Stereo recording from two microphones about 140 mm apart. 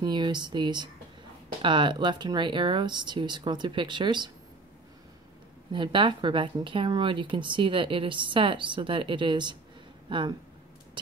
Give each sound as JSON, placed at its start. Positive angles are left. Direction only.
{"t": 0.0, "sound": "a woman's voice", "side_deg": -30}
{"t": 5.7, "sound": "a woman's voice", "side_deg": -35}